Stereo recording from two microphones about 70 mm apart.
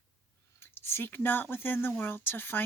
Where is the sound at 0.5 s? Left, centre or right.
Left.